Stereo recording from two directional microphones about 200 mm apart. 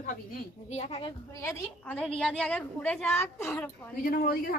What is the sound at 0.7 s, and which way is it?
Speech, 30° left (ahead or behind).